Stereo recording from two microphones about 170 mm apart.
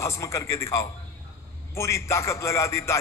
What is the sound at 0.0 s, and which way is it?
A man's voice, 15° left (ahead or behind).